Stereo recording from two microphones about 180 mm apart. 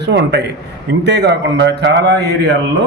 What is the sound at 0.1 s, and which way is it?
Speech, 75° right (ahead or behind).